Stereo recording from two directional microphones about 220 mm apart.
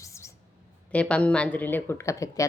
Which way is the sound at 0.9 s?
5° left (ahead or behind).